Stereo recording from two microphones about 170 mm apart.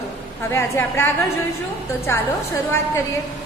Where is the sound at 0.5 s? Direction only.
15° left (ahead or behind).